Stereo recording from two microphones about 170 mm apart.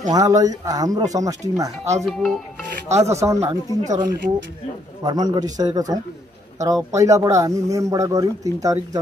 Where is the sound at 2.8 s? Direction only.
15° right (ahead or behind).